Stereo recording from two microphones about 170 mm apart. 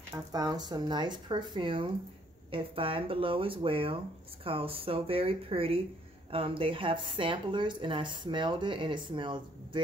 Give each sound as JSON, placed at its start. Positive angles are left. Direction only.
{"t": 0.1, "sound": "speech", "side_deg": -20}